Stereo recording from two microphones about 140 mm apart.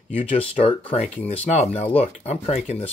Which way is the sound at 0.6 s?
40° left (ahead or behind).